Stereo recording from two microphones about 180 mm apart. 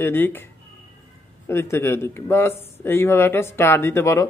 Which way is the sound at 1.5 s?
10° left (ahead or behind).